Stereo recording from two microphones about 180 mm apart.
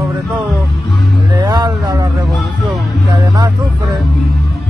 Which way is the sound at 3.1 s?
25° right (ahead or behind).